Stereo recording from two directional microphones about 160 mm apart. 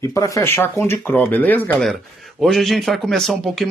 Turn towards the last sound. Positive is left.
turn(degrees=0)  # may be behind; listen again after turning